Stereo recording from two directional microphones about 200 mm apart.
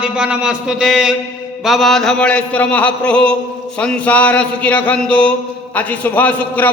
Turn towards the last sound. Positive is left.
turn(degrees=10)  # may be behind; listen again after turning